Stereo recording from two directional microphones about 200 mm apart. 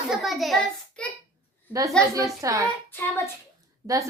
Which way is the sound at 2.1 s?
15° right (ahead or behind).